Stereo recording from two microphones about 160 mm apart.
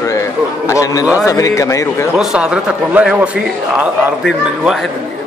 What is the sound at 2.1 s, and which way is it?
A man's voice, 5° right (ahead or behind).